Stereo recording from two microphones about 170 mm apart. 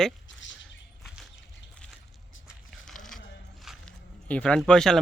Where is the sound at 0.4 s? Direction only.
90° left.